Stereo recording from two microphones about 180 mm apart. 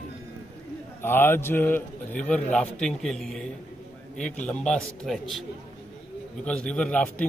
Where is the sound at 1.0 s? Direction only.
10° left (ahead or behind).